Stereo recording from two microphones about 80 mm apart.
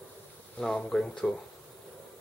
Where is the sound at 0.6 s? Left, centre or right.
Centre.